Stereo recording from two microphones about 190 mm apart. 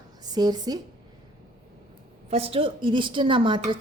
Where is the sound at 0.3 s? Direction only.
20° right (ahead or behind).